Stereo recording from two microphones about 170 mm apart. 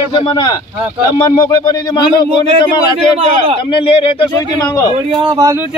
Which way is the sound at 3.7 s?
30° left (ahead or behind).